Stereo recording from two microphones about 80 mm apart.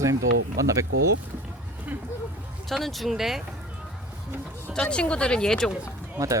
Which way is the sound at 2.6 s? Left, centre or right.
Centre.